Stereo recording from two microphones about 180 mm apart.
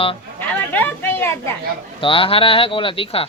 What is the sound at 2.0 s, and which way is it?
Speech, 30° left (ahead or behind).